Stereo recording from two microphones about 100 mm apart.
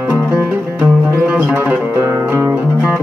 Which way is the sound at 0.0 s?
15° right (ahead or behind).